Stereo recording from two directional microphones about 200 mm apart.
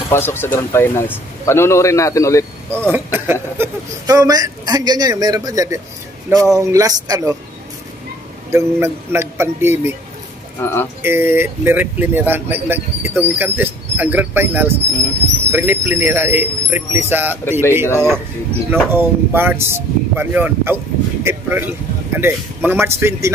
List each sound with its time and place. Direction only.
0.1 s a man's voice: 10° left (ahead or behind)
2.7 s a man's voice: 10° right (ahead or behind)
8.5 s speech: 15° right (ahead or behind)
10.6 s a man's voice: 10° left (ahead or behind)
11.0 s speech: 10° right (ahead or behind)
17.5 s a man's voice: 10° left (ahead or behind)
18.7 s speech: 10° right (ahead or behind)